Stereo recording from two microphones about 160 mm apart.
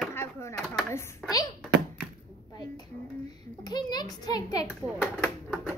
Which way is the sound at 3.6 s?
25° left (ahead or behind).